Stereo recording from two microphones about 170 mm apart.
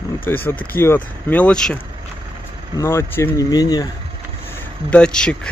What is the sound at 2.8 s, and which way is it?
Speech, 15° left (ahead or behind).